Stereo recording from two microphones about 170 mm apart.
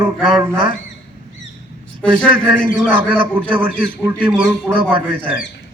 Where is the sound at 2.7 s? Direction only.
10° right (ahead or behind).